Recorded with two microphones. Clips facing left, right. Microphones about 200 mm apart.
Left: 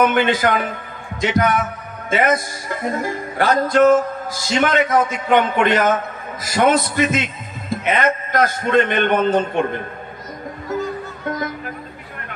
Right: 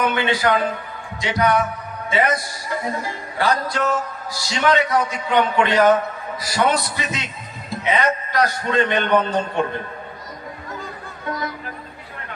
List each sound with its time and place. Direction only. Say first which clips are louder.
0.0 s a man's voice: left 4 dB; 50° left (ahead or behind)
11.2 s music: left 2 dB; 50° left (ahead or behind)